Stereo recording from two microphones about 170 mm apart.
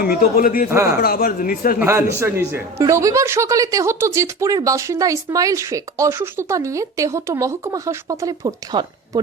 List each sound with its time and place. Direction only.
0.0 s speech: 55° left (ahead or behind)
1.8 s speech: 15° right (ahead or behind)